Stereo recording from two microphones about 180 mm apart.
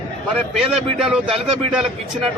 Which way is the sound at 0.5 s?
5° right (ahead or behind).